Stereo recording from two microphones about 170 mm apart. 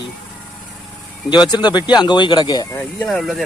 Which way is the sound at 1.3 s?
25° left (ahead or behind).